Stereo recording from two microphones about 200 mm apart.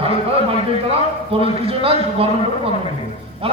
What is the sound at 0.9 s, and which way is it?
A man's voice, 30° right (ahead or behind).